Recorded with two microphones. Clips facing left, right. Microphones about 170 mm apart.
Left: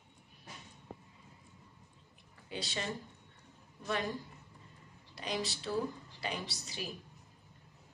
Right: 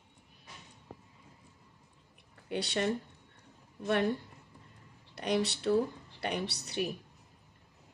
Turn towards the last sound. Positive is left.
turn(degrees=-65)  # may be behind; listen again after turning